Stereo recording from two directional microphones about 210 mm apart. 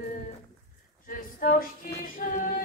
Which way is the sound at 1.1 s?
40° left (ahead or behind).